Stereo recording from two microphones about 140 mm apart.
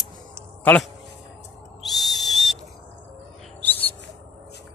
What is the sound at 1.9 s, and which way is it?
Whistle, centre (ahead or behind).